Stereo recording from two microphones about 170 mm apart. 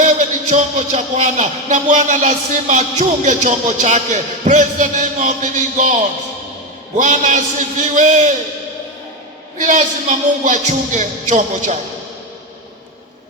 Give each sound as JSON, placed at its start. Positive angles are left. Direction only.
{"t": 0.0, "sound": "speech", "side_deg": -45}
{"t": 6.9, "sound": "speech", "side_deg": -45}
{"t": 9.6, "sound": "speech", "side_deg": -45}